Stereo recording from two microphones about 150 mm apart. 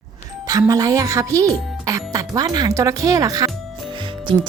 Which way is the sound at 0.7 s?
20° right (ahead or behind).